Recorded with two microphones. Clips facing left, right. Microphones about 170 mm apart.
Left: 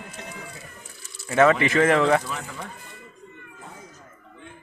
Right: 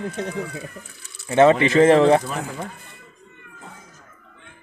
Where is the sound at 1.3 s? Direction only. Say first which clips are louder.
Right 4 dB; 25° right (ahead or behind).